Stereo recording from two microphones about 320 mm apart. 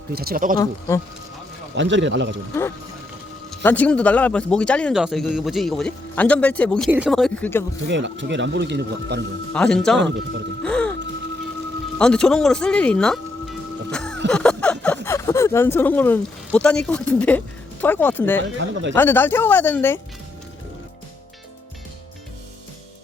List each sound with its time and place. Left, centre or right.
0.1 s speech: right
0.6 s speech: centre
1.7 s speech: right
3.5 s speech: centre
7.9 s speech: right
9.5 s speech: centre
10.6 s music: centre
11.9 s music: centre
14.3 s a sound: centre
15.0 s speech: centre